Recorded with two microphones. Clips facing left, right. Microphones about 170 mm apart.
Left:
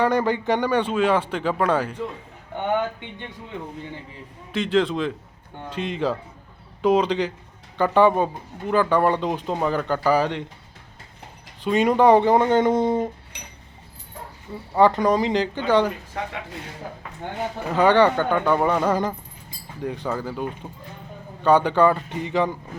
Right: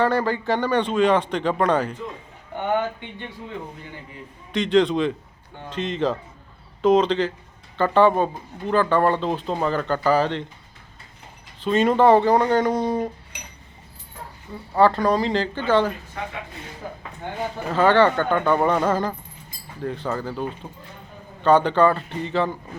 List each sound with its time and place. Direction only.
0.0 s speech: 15° left (ahead or behind)
4.5 s a man's voice: 5° left (ahead or behind)
11.6 s speech: 15° left (ahead or behind)
14.8 s speech: 15° left (ahead or behind)
17.7 s speech: 15° left (ahead or behind)